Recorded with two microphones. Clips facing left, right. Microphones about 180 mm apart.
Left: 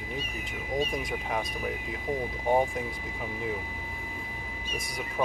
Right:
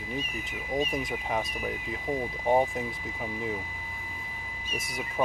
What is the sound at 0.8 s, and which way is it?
Speech, centre (ahead or behind).